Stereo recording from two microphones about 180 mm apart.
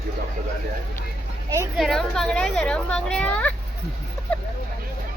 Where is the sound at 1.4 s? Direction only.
15° right (ahead or behind).